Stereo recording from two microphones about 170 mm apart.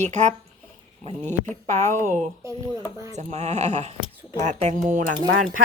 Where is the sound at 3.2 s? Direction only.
40° right (ahead or behind).